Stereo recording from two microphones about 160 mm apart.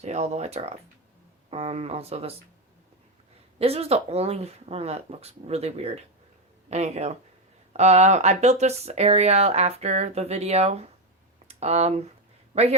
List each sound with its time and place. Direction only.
0.0 s speech: 45° right (ahead or behind)
3.6 s speech: 40° right (ahead or behind)